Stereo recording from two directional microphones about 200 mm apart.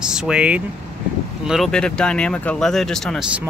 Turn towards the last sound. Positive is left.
turn(degrees=0)  # may be behind; listen again after turning